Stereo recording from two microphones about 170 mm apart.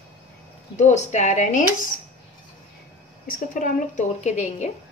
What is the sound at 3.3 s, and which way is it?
A woman's voice, 50° left (ahead or behind).